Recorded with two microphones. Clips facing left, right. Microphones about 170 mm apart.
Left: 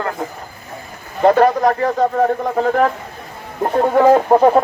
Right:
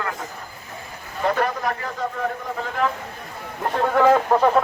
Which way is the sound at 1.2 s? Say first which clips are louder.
Left 10 dB; 40° left (ahead or behind).